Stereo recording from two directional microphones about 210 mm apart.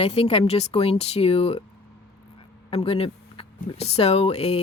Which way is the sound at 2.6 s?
25° left (ahead or behind).